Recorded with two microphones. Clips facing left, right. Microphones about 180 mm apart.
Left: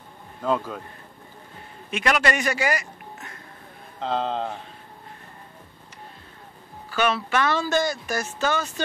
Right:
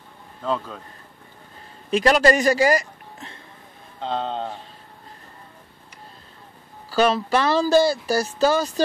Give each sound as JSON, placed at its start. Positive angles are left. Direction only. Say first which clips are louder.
{"t": 0.4, "sound": "a man's voice", "louder": "left 1 dB", "side_deg": 10}
{"t": 1.9, "sound": "a man's voice", "louder": "right 6 dB", "side_deg": -35}
{"t": 4.0, "sound": "speech", "louder": "left 1 dB", "side_deg": 5}
{"t": 6.9, "sound": "speech", "louder": "right 5 dB", "side_deg": -35}